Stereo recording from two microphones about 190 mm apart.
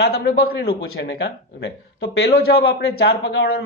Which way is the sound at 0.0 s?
60° left (ahead or behind).